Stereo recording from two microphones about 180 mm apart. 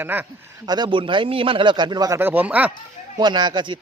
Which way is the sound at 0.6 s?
25° right (ahead or behind).